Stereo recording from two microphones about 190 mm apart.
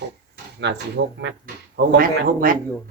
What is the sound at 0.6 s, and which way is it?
Speech, 65° right (ahead or behind).